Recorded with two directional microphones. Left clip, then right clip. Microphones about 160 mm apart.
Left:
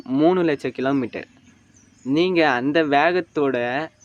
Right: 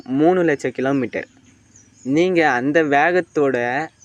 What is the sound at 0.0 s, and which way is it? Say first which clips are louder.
Speech: right 2 dB; centre (ahead or behind).